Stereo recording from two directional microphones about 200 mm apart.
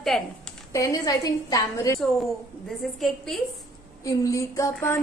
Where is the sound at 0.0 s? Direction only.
5° left (ahead or behind).